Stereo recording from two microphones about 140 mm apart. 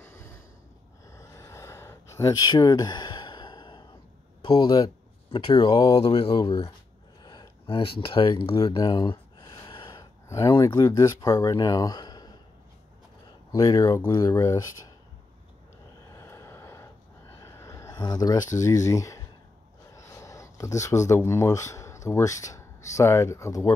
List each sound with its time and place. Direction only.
0.0 s snort: 20° left (ahead or behind)
1.1 s a sound: 20° left (ahead or behind)
4.4 s speech: 30° left (ahead or behind)
5.9 s speech: 45° left (ahead or behind)
6.2 s speech: 35° left (ahead or behind)
9.4 s gasp: 35° left (ahead or behind)
10.2 s speech: 20° left (ahead or behind)
13.5 s speech: 25° left (ahead or behind)
16.2 s vehicle: 20° left (ahead or behind)
17.4 s a sound: 20° left (ahead or behind)
18.6 s speech: 20° left (ahead or behind)